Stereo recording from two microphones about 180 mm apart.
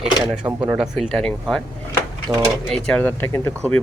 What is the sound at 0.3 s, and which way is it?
Speech, 25° right (ahead or behind).